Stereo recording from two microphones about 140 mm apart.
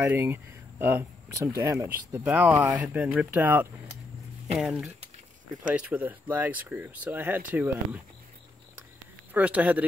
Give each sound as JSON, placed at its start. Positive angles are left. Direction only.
{"t": 0.0, "sound": "speech", "side_deg": -15}
{"t": 4.6, "sound": "speech", "side_deg": 0}
{"t": 9.3, "sound": "speech", "side_deg": -10}